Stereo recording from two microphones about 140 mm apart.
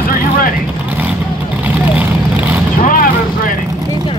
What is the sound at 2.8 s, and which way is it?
Vehicle, 80° left.